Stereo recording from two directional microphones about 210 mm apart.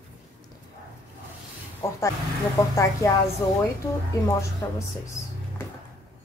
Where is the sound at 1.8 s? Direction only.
15° left (ahead or behind).